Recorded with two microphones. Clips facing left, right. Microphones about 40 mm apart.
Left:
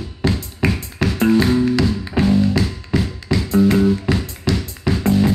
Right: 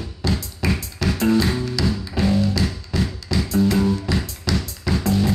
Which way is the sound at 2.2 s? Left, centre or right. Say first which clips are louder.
Left 4 dB; left.